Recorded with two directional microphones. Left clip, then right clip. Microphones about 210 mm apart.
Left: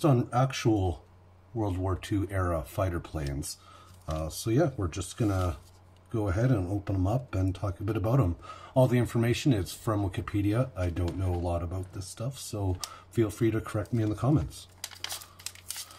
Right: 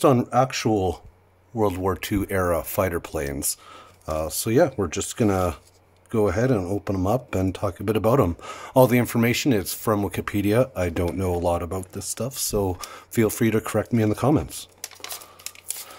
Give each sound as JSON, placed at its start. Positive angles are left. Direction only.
{"t": 0.0, "sound": "speech", "side_deg": -50}